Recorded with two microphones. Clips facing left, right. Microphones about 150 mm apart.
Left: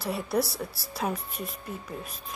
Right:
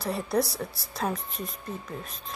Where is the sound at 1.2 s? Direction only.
30° right (ahead or behind).